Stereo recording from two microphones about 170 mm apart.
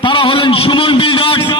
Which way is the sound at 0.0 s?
30° left (ahead or behind).